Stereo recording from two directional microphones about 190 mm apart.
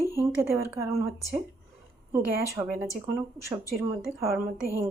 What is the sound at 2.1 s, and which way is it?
Speech, 15° right (ahead or behind).